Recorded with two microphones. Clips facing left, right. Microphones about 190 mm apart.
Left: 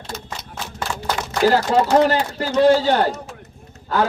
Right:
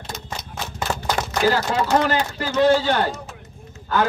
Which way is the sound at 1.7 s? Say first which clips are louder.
Left 4 dB; 35° left (ahead or behind).